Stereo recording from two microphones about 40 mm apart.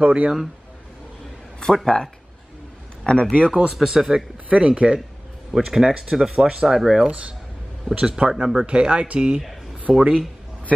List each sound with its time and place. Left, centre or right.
0.0 s speech: right
1.6 s speech: centre
3.1 s speech: left
3.8 s speech: centre
4.5 s speech: right
5.5 s speech: centre
7.1 s speech: right
9.4 s a sound: centre
9.9 s speech: centre